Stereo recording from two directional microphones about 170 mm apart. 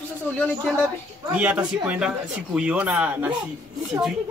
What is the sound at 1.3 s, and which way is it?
A man's voice, 10° right (ahead or behind).